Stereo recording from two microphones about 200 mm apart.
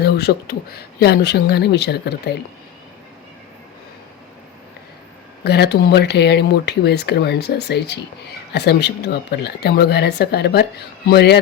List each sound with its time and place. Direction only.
0.0 s speech: 55° left (ahead or behind)
5.4 s speech: 55° left (ahead or behind)